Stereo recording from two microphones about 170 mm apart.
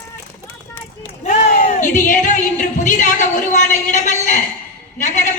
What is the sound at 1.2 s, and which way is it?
Speech, 45° left (ahead or behind).